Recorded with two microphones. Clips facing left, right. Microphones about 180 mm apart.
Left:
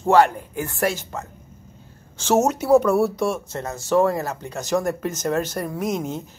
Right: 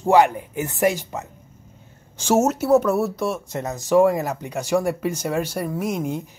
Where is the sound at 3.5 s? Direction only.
15° right (ahead or behind).